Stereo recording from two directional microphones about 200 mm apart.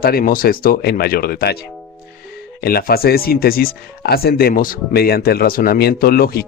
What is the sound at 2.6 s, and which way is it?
Speech, 50° left (ahead or behind).